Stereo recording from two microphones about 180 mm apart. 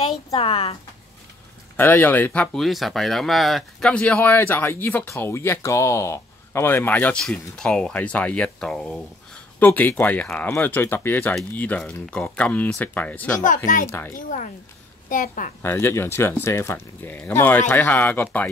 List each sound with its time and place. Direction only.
0.3 s speech: 30° left (ahead or behind)
1.8 s speech: 10° left (ahead or behind)
14.1 s a woman's voice: 45° left (ahead or behind)
15.6 s speech: 10° left (ahead or behind)